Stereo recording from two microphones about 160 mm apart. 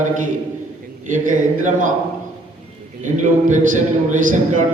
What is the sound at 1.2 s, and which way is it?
Speech, 55° right (ahead or behind).